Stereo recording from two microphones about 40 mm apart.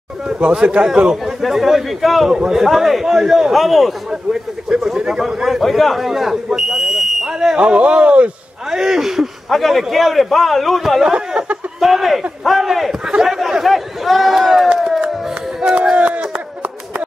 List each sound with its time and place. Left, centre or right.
0.4 s speech: right
1.1 s a man's voice: centre
2.3 s a man's voice: centre
3.5 s a man's voice: centre
4.1 s a man's voice: centre
7.5 s speech: right
8.6 s a man's voice: centre
11.1 s speech: right
11.8 s a man's voice: centre
15.0 s a sound: centre